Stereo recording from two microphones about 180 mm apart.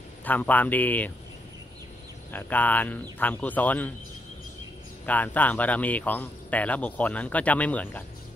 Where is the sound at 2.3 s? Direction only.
10° left (ahead or behind).